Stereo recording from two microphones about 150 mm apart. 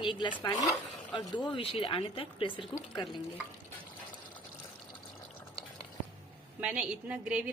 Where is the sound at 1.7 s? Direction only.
35° left (ahead or behind).